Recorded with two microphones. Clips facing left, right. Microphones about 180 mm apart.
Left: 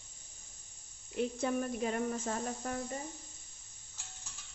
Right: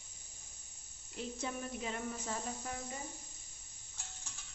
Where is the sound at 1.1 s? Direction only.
55° left (ahead or behind).